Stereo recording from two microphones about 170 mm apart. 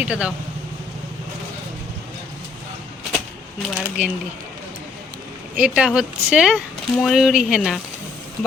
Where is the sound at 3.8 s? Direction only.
5° right (ahead or behind).